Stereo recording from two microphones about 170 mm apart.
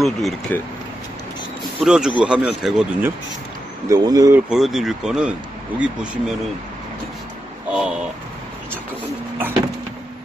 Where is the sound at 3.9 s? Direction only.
20° right (ahead or behind).